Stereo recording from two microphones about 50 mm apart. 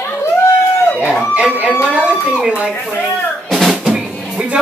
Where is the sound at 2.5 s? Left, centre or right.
Right.